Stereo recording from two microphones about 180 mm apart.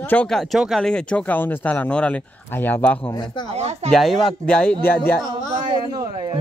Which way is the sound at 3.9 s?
Centre (ahead or behind).